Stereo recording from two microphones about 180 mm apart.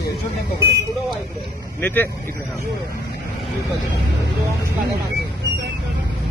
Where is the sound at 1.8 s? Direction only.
10° left (ahead or behind).